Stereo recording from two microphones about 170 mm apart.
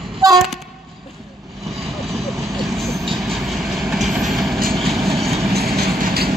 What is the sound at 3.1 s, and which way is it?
Train, centre (ahead or behind).